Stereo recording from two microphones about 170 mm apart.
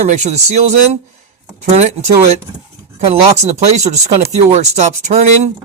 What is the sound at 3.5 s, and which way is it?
Speech, 40° right (ahead or behind).